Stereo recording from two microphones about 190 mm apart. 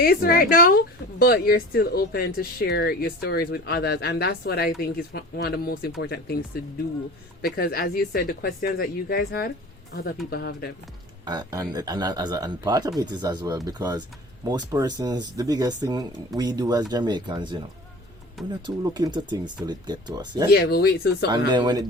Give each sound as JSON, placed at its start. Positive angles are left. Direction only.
{"t": 0.0, "sound": "speech", "side_deg": 50}
{"t": 11.3, "sound": "speech", "side_deg": -20}
{"t": 18.6, "sound": "speech", "side_deg": -20}
{"t": 20.5, "sound": "speech", "side_deg": 55}
{"t": 21.2, "sound": "speech", "side_deg": -20}